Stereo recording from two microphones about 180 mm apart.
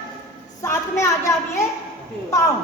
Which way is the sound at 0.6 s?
15° left (ahead or behind).